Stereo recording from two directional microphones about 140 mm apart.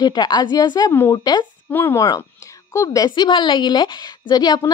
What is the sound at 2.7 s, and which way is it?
A woman's voice, 25° left (ahead or behind).